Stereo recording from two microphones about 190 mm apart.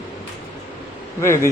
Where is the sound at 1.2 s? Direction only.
15° left (ahead or behind).